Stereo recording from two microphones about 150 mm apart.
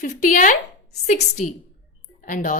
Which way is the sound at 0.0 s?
60° left (ahead or behind).